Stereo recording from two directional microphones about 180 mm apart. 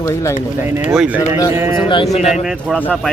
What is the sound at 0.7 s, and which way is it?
Speech, 10° right (ahead or behind).